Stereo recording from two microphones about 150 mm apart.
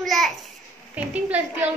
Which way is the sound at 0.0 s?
Centre (ahead or behind).